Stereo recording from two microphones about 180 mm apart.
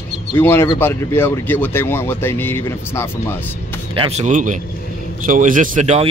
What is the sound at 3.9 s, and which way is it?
Speech, 35° right (ahead or behind).